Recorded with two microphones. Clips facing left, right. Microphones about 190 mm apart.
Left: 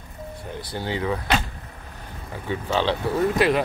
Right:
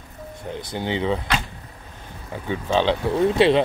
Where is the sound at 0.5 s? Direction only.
20° right (ahead or behind).